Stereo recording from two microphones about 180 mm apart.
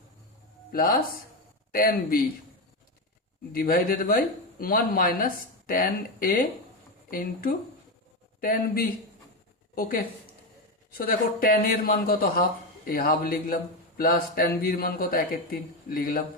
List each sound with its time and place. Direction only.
0.7 s speech: 55° left (ahead or behind)
3.5 s speech: 55° left (ahead or behind)
10.9 s speech: 55° left (ahead or behind)